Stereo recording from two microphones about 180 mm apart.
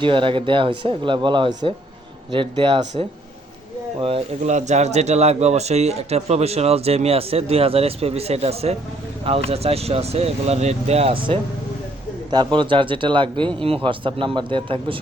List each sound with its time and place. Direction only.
0.0 s speech: 30° right (ahead or behind)
4.0 s speech: 35° right (ahead or behind)